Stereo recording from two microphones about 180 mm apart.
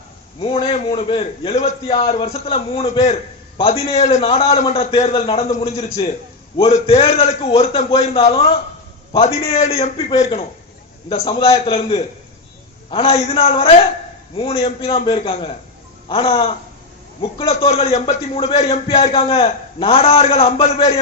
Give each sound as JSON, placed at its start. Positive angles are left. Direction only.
{"t": 0.4, "sound": "a man's voice", "side_deg": 30}